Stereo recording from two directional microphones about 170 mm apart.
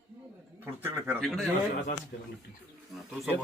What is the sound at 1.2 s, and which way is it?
Speech, centre (ahead or behind).